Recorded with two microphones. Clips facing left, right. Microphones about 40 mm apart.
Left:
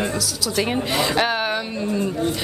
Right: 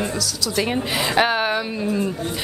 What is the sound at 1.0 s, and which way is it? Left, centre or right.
A woman's voice, centre.